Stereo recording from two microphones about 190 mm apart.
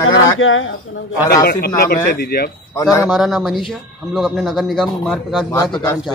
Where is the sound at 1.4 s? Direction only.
55° left (ahead or behind).